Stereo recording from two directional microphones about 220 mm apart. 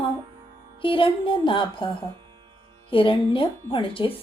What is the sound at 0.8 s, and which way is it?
Speech, 25° left (ahead or behind).